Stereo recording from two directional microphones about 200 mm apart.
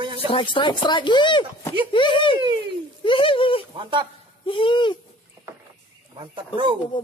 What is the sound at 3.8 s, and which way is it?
Speech, 25° right (ahead or behind).